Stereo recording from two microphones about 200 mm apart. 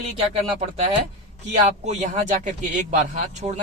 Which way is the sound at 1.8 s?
35° right (ahead or behind).